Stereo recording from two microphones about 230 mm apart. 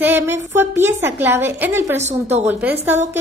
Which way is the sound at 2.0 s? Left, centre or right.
Right.